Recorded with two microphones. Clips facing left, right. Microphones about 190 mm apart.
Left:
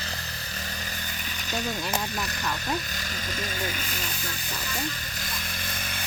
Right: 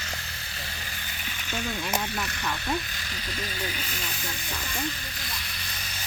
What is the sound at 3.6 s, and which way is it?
Speech, 45° left (ahead or behind).